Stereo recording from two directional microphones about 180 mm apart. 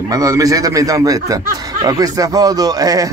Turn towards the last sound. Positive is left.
turn(degrees=-20)  # may be behind; listen again after turning